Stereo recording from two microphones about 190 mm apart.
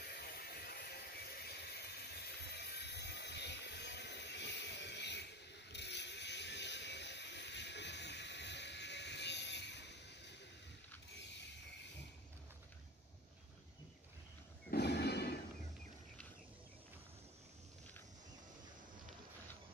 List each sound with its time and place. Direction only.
0.2 s a sound: 55° left (ahead or behind)
5.7 s vehicle: 65° left (ahead or behind)
14.7 s music: 60° left (ahead or behind)